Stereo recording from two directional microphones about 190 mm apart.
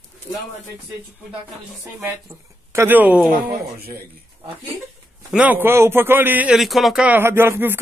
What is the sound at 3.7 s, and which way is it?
Speech, 55° right (ahead or behind).